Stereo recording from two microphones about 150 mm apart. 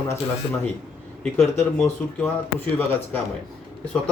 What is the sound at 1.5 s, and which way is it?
Speech, 15° left (ahead or behind).